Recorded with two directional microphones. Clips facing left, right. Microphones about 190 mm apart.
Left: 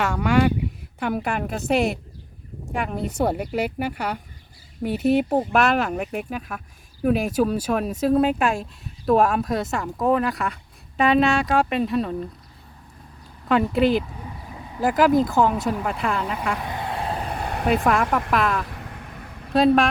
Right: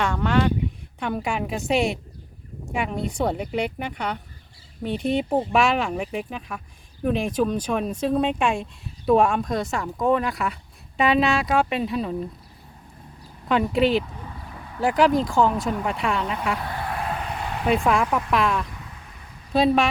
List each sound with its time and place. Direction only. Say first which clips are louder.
0.0 s speech: left 2 dB; 10° left (ahead or behind)
13.5 s speech: left 1 dB; centre (ahead or behind)
16.6 s a sound: left 1 dB; 20° left (ahead or behind); by 17.7 s 45° left (ahead or behind)
17.8 s speech: left 1 dB; centre (ahead or behind)
18.8 s vehicle: left 6 dB; 60° left (ahead or behind)
19.5 s speech: left 2 dB; centre (ahead or behind)